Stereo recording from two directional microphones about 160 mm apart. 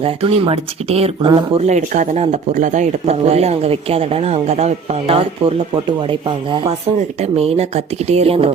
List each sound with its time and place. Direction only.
0.0 s speech: 35° right (ahead or behind)